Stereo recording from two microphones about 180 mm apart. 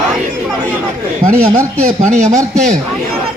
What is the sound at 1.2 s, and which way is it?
Speech, 15° right (ahead or behind).